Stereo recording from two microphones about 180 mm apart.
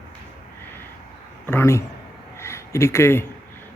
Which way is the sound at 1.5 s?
15° left (ahead or behind).